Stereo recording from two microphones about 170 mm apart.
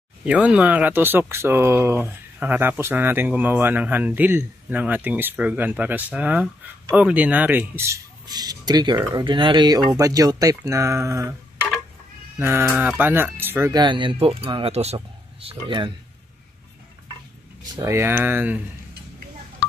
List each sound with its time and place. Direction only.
0.2 s speech: 5° right (ahead or behind)
12.4 s speech: 15° right (ahead or behind)
13.7 s speech: 30° right (ahead or behind)
17.7 s speech: 15° right (ahead or behind)